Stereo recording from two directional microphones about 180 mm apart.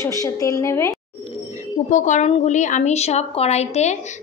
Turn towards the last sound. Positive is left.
turn(degrees=40)  # may be behind; listen again after turning